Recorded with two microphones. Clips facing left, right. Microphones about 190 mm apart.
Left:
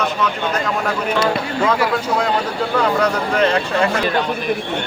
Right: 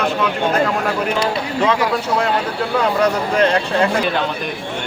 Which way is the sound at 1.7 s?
15° right (ahead or behind).